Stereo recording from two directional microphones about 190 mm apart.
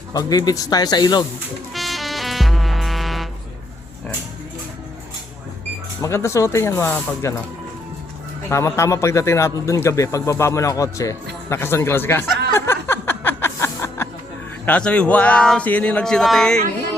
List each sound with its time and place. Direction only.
0.1 s speech: 20° left (ahead or behind)
1.7 s music: centre (ahead or behind)
6.0 s speech: 15° left (ahead or behind)
8.4 s speech: 15° left (ahead or behind)
12.5 s music: 10° left (ahead or behind)
14.6 s speech: 5° left (ahead or behind)